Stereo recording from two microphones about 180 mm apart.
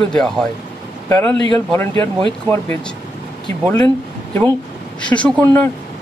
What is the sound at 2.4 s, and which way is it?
Speech, 10° left (ahead or behind).